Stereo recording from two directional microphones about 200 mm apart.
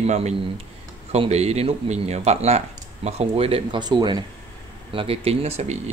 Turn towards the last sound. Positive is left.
turn(degrees=-35)  # may be behind; listen again after turning